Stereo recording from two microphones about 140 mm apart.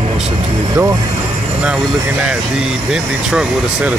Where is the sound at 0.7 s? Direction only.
20° right (ahead or behind).